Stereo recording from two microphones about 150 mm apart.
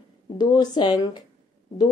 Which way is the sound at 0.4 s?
25° left (ahead or behind).